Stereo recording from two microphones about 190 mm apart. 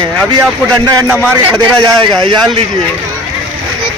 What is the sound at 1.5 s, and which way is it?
A man's voice, 25° right (ahead or behind).